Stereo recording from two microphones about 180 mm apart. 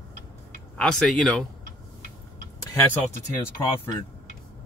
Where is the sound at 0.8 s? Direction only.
Centre (ahead or behind).